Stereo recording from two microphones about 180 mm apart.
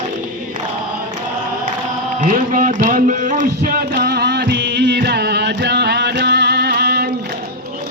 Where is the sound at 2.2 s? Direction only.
45° right (ahead or behind); by 7.0 s 65° right (ahead or behind).